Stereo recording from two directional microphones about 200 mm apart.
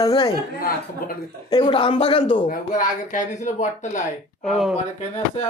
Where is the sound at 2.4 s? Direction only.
40° left (ahead or behind).